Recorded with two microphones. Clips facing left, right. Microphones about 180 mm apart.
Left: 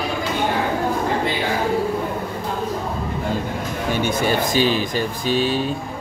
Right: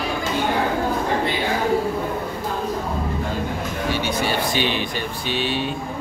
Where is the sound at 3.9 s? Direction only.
50° left (ahead or behind).